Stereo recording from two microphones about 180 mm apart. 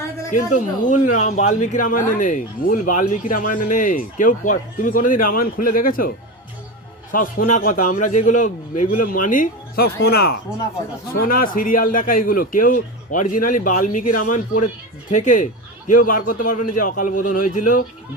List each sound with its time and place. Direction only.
0.3 s speech: 45° left (ahead or behind)
7.1 s speech: 50° left (ahead or behind)